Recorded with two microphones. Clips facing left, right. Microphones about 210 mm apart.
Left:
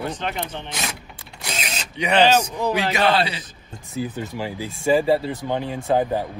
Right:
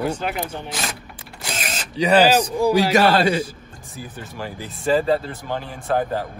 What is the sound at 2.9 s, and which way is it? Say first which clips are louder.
Speech: right 4 dB; 45° right (ahead or behind).